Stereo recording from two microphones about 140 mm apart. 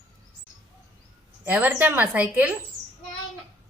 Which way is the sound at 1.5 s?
10° right (ahead or behind).